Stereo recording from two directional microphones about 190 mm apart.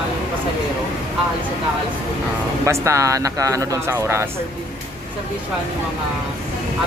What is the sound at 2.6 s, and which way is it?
Speech, 15° right (ahead or behind).